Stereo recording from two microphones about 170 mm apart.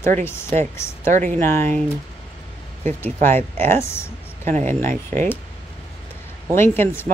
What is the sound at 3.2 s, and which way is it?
Speech, 10° left (ahead or behind).